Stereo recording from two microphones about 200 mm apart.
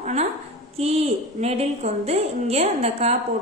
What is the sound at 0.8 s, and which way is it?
A woman's voice, 30° right (ahead or behind).